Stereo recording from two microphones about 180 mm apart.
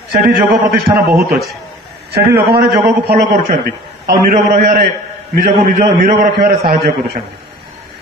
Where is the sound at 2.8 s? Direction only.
60° right (ahead or behind).